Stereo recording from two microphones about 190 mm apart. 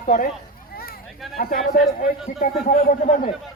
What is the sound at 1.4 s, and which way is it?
A man's voice, 50° left (ahead or behind).